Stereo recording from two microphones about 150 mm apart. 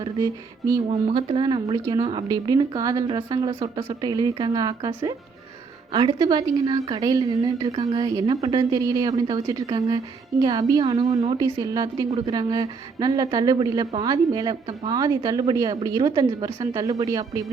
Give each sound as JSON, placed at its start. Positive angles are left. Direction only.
{"t": 1.1, "sound": "a woman's voice", "side_deg": -30}